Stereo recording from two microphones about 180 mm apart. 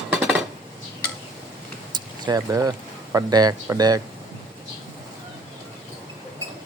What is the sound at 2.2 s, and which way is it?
Speech, 20° right (ahead or behind).